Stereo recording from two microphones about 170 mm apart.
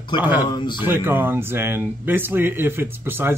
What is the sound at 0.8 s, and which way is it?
Speech, 10° right (ahead or behind).